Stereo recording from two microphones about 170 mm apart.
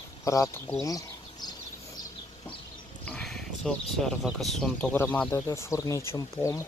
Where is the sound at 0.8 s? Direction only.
20° left (ahead or behind).